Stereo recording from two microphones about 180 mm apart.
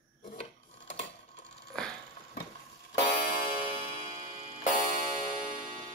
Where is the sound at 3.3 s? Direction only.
55° left (ahead or behind).